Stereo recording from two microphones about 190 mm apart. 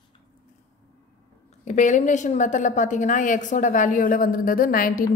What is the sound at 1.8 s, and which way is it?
A woman's voice, 40° left (ahead or behind).